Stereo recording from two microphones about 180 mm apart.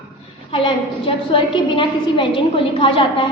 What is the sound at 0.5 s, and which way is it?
A woman's voice, 30° left (ahead or behind).